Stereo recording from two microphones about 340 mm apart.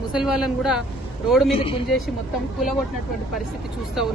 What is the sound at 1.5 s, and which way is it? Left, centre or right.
Speech, centre.